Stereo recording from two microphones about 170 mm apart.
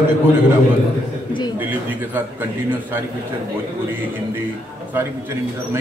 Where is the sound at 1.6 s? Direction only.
10° right (ahead or behind).